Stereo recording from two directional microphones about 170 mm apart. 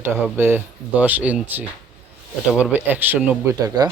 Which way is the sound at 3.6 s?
25° right (ahead or behind).